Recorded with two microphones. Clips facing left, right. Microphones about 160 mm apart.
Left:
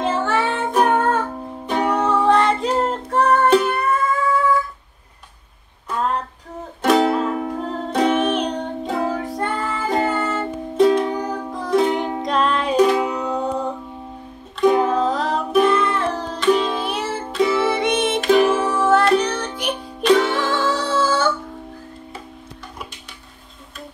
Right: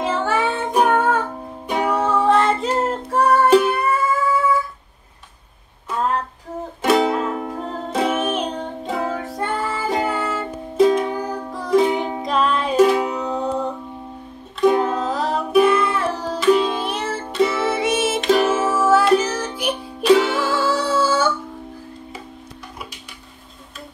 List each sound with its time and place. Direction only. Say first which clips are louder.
0.0 s music: even; 10° right (ahead or behind)
5.9 s a sound: even; centre (ahead or behind)
6.8 s music: left 1 dB; centre (ahead or behind)